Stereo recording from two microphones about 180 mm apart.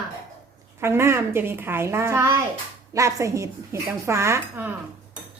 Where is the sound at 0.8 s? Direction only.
15° right (ahead or behind).